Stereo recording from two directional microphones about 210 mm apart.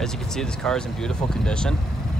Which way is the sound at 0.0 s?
Centre (ahead or behind).